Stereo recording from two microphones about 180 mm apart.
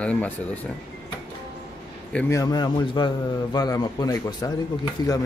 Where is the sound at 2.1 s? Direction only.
10° left (ahead or behind).